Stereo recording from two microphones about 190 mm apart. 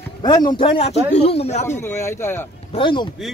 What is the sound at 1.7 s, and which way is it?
Speech, 15° left (ahead or behind).